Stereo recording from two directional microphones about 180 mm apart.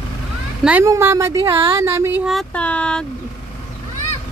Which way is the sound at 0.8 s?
15° right (ahead or behind).